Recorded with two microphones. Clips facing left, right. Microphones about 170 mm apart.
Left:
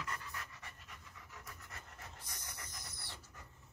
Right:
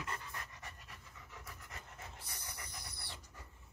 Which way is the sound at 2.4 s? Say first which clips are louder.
Right 2 dB; 10° right (ahead or behind).